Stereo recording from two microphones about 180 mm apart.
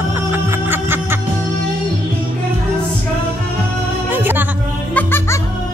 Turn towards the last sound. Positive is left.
turn(degrees=10)  # may be behind; listen again after turning